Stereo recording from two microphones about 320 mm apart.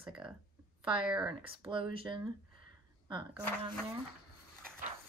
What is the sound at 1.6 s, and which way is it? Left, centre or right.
Speech, centre.